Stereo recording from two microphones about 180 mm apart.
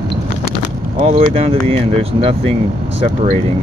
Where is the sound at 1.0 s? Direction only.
35° right (ahead or behind).